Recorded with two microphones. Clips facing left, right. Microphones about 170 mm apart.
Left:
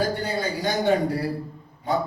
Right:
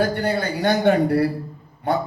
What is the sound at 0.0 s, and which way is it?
A man's voice, 65° right (ahead or behind).